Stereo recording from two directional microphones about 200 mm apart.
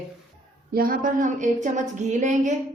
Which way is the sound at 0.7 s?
45° right (ahead or behind).